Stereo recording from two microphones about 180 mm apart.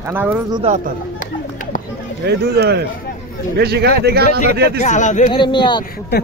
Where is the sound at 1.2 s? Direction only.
50° left (ahead or behind).